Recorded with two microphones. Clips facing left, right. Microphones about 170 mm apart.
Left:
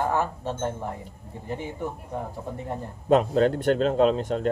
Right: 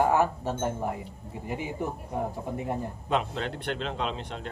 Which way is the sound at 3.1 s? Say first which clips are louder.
Left 10 dB; 45° left (ahead or behind).